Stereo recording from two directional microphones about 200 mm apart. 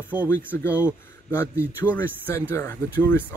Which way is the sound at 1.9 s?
10° left (ahead or behind).